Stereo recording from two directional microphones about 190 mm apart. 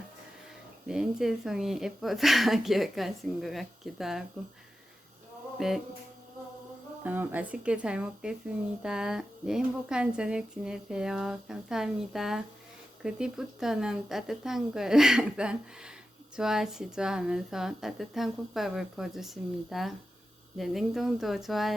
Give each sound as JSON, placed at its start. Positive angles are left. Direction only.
{"t": 0.9, "sound": "speech", "side_deg": -5}
{"t": 5.5, "sound": "mantra", "side_deg": 0}
{"t": 7.0, "sound": "speech", "side_deg": -10}